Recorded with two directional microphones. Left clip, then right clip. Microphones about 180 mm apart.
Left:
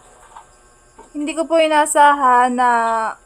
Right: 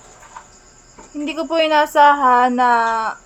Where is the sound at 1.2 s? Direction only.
5° left (ahead or behind).